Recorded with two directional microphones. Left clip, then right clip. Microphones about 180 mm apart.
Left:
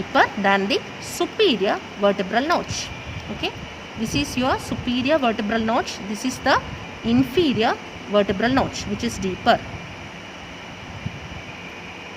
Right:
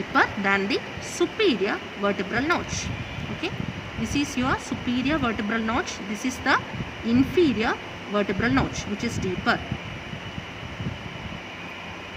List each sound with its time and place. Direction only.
0.1 s speech: 40° left (ahead or behind)
4.0 s speech: 40° left (ahead or behind)